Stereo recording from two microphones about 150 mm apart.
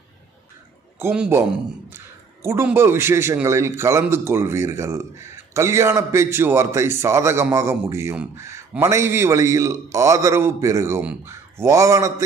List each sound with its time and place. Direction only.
1.0 s a man's voice: 15° right (ahead or behind)
2.4 s a man's voice: 15° right (ahead or behind)